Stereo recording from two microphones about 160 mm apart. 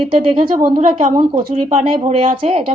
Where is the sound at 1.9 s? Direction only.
40° right (ahead or behind).